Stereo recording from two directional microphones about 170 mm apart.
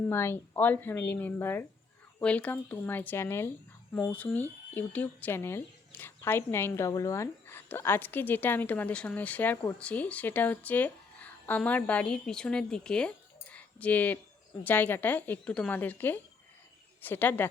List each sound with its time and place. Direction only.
0.0 s speech: 15° left (ahead or behind)